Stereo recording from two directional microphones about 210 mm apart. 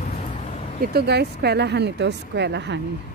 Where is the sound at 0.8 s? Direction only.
50° right (ahead or behind).